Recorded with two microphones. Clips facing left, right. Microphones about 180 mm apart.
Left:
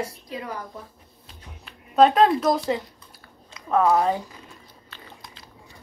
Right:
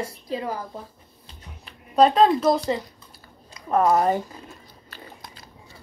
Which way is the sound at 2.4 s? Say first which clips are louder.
Right 1 dB; centre (ahead or behind).